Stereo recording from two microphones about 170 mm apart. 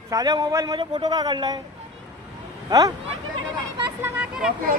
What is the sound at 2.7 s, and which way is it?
Speech, 20° right (ahead or behind).